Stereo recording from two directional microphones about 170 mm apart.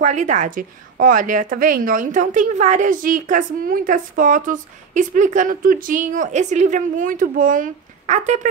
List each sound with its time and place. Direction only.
0.0 s a woman's voice: 45° right (ahead or behind)